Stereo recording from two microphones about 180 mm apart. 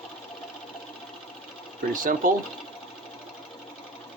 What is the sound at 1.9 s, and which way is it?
Speech, 45° right (ahead or behind).